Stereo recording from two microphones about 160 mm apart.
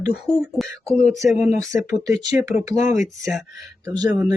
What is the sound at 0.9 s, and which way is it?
Speech, 40° left (ahead or behind).